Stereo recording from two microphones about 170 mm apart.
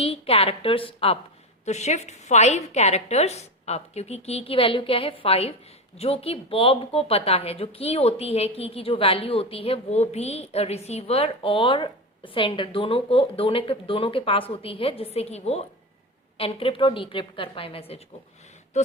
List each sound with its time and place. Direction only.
0.0 s speech: 35° left (ahead or behind)